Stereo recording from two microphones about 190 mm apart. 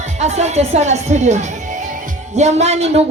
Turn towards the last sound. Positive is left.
turn(degrees=-35)  # may be behind; listen again after turning